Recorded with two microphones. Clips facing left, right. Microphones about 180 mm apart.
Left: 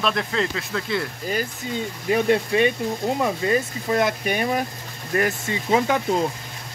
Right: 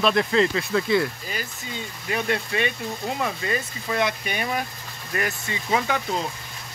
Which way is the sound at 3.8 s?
45° left (ahead or behind).